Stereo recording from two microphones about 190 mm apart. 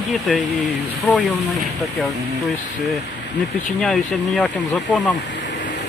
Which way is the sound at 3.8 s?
5° left (ahead or behind).